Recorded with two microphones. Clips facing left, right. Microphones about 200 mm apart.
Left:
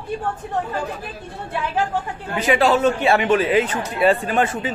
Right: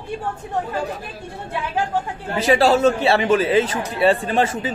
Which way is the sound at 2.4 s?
35° right (ahead or behind).